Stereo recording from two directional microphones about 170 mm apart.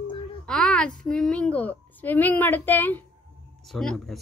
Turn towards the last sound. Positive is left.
turn(degrees=0)  # may be behind; listen again after turning